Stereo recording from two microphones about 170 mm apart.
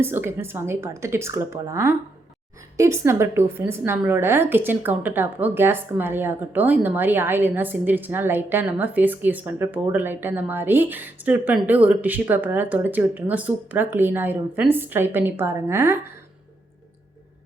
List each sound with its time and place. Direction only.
0.0 s a woman's voice: 15° right (ahead or behind)